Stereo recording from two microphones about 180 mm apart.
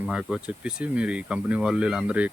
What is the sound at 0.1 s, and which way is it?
Speech, 5° right (ahead or behind).